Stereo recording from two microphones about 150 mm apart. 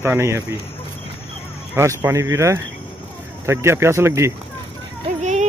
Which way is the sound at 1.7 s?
15° right (ahead or behind).